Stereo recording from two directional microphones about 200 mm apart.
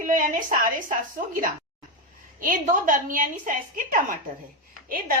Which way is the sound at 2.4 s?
40° right (ahead or behind).